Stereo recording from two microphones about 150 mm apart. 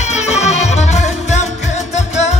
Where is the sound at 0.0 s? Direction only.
50° left (ahead or behind).